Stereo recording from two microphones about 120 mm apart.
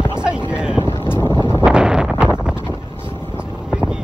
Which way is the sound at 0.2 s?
10° right (ahead or behind).